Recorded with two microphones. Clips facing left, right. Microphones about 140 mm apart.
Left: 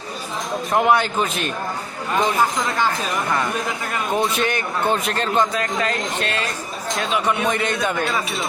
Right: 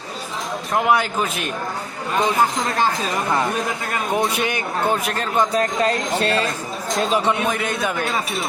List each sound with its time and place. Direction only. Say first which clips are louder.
0.7 s a man's voice: left 1 dB; centre (ahead or behind)
3.2 s speech: right 3 dB; 15° right (ahead or behind)
5.5 s speech: right 3 dB; 35° right (ahead or behind)
7.4 s a man's voice: left 1 dB; 5° right (ahead or behind)